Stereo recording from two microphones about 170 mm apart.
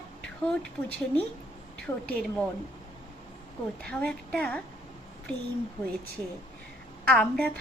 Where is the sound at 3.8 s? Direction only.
5° left (ahead or behind).